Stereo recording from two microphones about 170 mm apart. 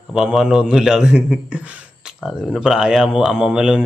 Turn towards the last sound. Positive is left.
turn(degrees=-5)  # may be behind; listen again after turning